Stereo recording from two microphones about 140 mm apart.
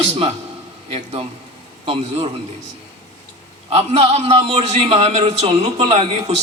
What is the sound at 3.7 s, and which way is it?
A man's voice, 50° right (ahead or behind).